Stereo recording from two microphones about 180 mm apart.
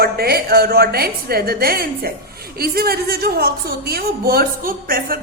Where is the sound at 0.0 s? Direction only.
60° right (ahead or behind).